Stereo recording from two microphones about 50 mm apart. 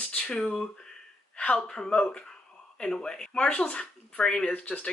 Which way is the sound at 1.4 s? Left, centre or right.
Centre.